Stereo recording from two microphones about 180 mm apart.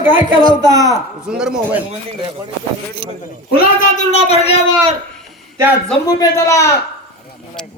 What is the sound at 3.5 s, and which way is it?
Speech, 55° left (ahead or behind).